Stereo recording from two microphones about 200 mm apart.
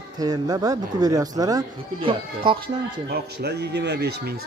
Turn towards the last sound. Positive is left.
turn(degrees=-55)  # may be behind; listen again after turning